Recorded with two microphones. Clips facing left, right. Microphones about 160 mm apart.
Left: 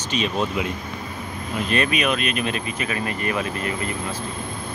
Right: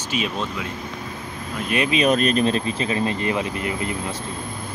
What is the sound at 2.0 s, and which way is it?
Speech, 40° right (ahead or behind).